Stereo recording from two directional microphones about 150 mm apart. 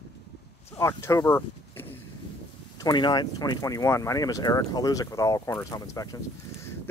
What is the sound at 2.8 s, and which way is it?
Speech, 30° left (ahead or behind).